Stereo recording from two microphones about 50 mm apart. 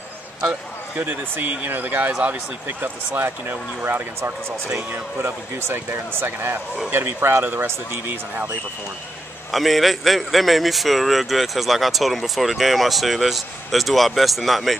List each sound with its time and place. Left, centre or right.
0.9 s speech: right
9.5 s a man's voice: centre